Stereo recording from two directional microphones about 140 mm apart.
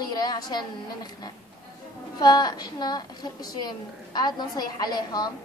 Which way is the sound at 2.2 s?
30° left (ahead or behind).